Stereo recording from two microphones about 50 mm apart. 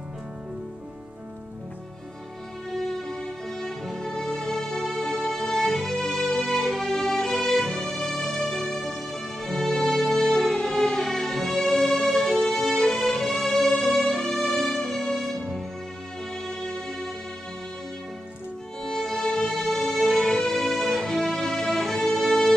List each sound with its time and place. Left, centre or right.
2.8 s music: centre
18.8 s music: centre